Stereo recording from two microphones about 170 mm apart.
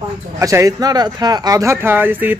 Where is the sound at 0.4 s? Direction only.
20° right (ahead or behind).